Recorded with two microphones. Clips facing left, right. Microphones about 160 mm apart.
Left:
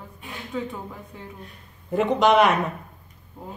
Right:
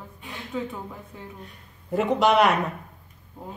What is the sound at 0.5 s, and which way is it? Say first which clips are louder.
Speech: left 1 dB; centre (ahead or behind).